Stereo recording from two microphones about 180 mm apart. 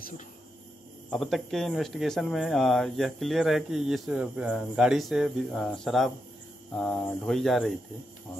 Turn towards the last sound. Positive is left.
turn(degrees=0)  # may be behind; listen again after turning